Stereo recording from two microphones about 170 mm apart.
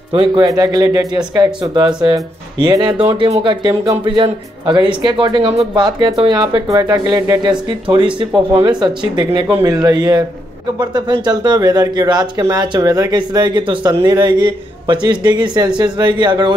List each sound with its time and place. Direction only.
0.1 s speech: 30° right (ahead or behind)